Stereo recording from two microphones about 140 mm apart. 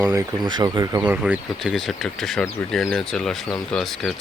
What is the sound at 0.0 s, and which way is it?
Speech, 25° right (ahead or behind).